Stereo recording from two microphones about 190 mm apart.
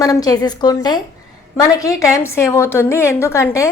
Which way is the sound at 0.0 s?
20° left (ahead or behind).